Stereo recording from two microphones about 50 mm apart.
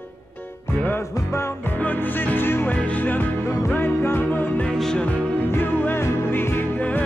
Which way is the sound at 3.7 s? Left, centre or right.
Left.